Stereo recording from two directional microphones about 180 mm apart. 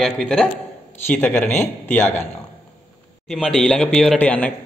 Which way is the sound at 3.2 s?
Centre (ahead or behind).